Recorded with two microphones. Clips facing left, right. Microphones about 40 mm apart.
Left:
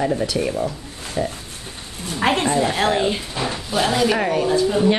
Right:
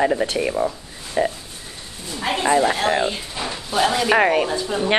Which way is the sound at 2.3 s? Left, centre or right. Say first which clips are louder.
Left 4 dB; left.